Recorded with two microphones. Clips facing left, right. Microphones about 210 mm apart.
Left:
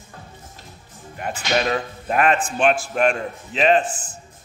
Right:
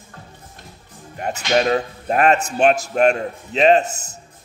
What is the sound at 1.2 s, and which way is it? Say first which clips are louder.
Speech: right 4 dB; 40° right (ahead or behind).